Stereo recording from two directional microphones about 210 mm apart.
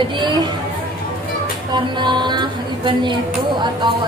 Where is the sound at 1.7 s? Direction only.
20° right (ahead or behind).